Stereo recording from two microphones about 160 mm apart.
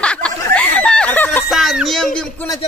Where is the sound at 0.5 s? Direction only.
5° left (ahead or behind).